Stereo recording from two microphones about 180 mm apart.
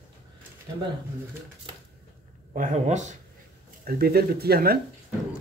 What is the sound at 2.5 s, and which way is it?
Speech, 45° right (ahead or behind).